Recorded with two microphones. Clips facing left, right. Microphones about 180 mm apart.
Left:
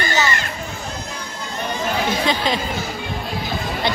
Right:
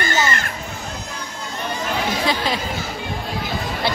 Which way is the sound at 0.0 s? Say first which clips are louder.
Even; 50° right (ahead or behind).